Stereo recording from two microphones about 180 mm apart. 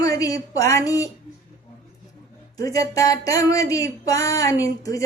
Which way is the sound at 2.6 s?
20° left (ahead or behind).